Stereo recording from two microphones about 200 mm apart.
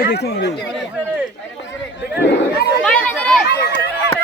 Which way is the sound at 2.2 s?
55° left (ahead or behind).